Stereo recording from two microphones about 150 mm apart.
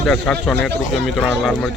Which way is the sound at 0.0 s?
5° left (ahead or behind).